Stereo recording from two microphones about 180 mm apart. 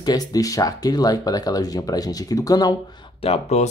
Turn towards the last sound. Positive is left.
turn(degrees=35)  # may be behind; listen again after turning